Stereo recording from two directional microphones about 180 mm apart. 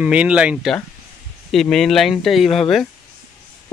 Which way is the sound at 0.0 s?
5° right (ahead or behind).